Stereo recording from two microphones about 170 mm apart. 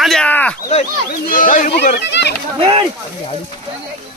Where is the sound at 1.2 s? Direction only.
55° left (ahead or behind).